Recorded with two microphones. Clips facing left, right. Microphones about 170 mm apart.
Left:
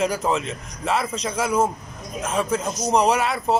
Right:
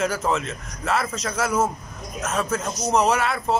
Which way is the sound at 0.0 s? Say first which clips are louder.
Left 1 dB; centre (ahead or behind).